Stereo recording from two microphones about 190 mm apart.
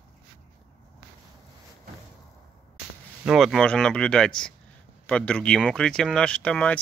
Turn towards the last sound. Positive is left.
turn(degrees=5)  # may be behind; listen again after turning